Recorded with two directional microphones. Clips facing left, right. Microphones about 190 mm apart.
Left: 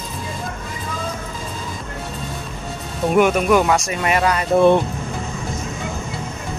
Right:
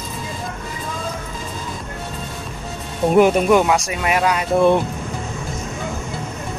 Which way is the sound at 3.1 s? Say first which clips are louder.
Right 2 dB; 30° right (ahead or behind).